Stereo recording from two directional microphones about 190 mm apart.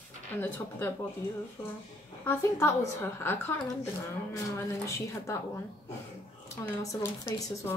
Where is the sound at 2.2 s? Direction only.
15° left (ahead or behind).